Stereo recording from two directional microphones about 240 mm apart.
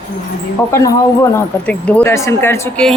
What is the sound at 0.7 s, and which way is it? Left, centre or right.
Speech, centre.